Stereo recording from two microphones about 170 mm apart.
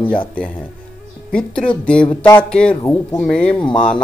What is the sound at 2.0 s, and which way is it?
Music, 25° left (ahead or behind).